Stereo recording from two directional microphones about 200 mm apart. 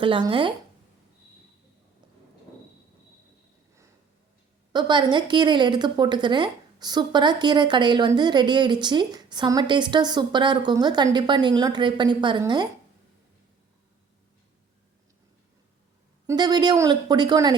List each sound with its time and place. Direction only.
0.0 s a woman's voice: 25° right (ahead or behind)
4.7 s a woman's voice: 20° right (ahead or behind)
16.2 s a woman's voice: 20° right (ahead or behind)